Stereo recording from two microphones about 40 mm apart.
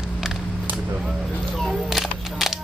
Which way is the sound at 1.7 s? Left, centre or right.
Centre.